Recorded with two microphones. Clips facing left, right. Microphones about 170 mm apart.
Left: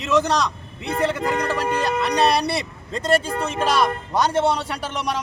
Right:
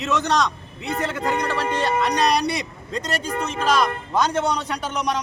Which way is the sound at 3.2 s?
5° left (ahead or behind).